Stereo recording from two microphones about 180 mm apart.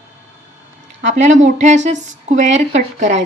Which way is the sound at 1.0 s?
40° right (ahead or behind).